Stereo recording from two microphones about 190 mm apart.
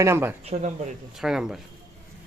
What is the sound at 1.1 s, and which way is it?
Speech, 5° right (ahead or behind).